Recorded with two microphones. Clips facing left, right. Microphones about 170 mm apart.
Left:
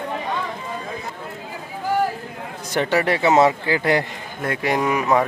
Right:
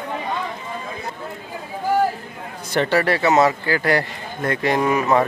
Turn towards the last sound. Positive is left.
turn(degrees=10)  # may be behind; listen again after turning